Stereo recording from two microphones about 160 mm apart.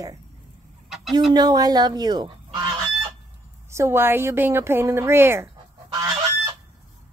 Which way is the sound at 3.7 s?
15° right (ahead or behind).